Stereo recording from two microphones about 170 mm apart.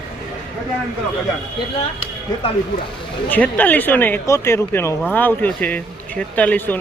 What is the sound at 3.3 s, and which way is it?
Speech, 10° left (ahead or behind).